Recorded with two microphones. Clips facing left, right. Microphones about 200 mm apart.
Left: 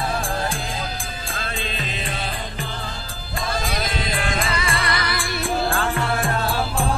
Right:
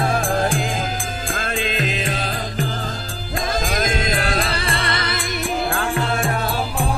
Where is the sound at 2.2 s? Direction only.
40° right (ahead or behind); by 6.9 s 15° right (ahead or behind).